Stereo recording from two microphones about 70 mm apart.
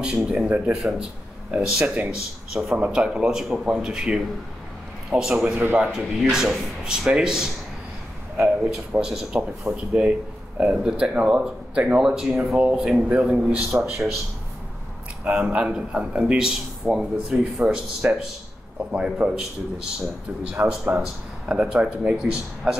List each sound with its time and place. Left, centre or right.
0.0 s speech: centre
8.9 s speech: centre
15.3 s speech: centre